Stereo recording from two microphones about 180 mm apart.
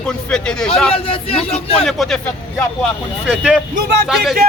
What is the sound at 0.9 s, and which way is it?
Speech, 30° left (ahead or behind).